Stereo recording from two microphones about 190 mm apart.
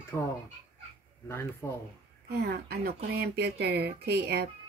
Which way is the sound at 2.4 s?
55° right (ahead or behind).